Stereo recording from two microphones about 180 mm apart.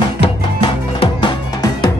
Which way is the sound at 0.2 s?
30° left (ahead or behind).